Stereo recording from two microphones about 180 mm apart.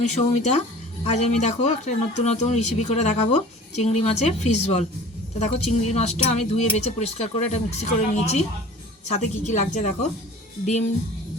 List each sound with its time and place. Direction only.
0.0 s speech: 40° left (ahead or behind)